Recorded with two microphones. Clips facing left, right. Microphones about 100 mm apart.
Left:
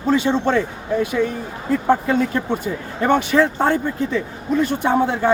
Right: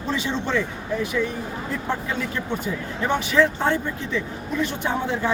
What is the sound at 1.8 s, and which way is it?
A man's voice, 40° left (ahead or behind).